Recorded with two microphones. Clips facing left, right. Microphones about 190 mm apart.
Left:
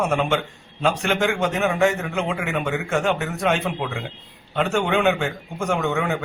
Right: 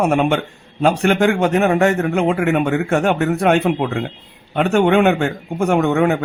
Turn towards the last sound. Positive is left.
turn(degrees=-55)  # may be behind; listen again after turning